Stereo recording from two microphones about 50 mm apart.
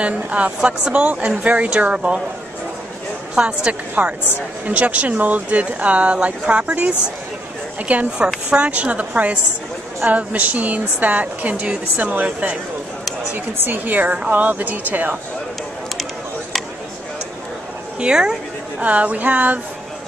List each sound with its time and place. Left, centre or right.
0.0 s speech: right
3.3 s speech: right
17.9 s speech: centre
18.8 s speech: right